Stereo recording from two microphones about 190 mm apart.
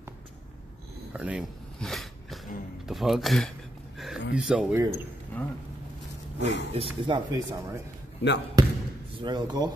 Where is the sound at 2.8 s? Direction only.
Centre (ahead or behind).